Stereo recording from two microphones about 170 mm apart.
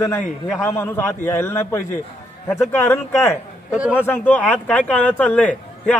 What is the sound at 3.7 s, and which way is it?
Speech, 5° right (ahead or behind).